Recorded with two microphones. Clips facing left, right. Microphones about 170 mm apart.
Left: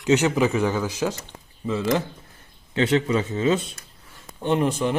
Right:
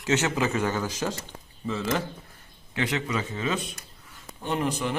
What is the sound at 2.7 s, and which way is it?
Speech, 30° left (ahead or behind).